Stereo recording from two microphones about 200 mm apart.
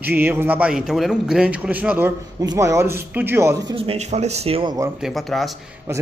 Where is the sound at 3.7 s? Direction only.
30° right (ahead or behind).